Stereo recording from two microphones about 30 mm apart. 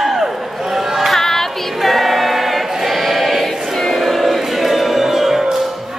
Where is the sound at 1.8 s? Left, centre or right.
Centre.